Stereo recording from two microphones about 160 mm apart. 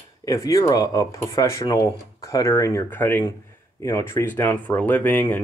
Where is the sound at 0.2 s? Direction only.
20° left (ahead or behind).